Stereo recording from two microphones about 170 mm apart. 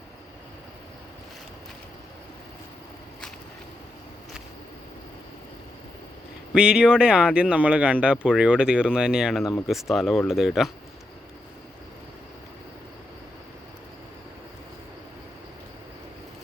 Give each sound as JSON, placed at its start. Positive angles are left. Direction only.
{"t": 6.5, "sound": "speech", "side_deg": -5}